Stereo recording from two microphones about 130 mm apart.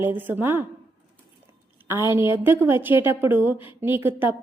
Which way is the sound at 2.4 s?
15° right (ahead or behind).